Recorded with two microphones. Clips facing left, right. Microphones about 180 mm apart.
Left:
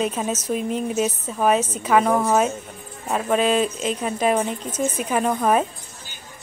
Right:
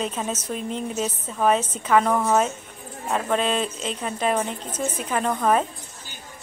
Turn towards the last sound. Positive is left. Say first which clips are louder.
# left 2 dB
turn(degrees=10)  # may be behind; listen again after turning